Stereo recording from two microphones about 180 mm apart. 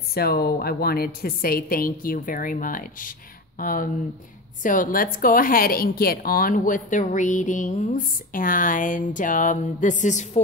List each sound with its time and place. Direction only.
0.1 s a woman's voice: 60° left (ahead or behind); by 10.4 s 40° left (ahead or behind)